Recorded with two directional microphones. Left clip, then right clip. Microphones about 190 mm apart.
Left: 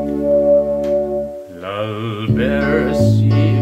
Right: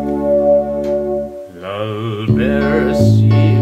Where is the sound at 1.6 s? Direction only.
10° left (ahead or behind).